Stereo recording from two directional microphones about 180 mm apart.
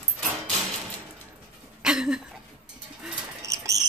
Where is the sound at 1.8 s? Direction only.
5° right (ahead or behind).